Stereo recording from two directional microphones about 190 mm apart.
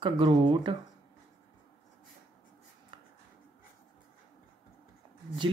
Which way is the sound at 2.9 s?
25° right (ahead or behind).